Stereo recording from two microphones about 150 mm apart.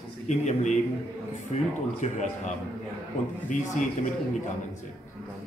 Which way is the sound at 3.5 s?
55° left (ahead or behind).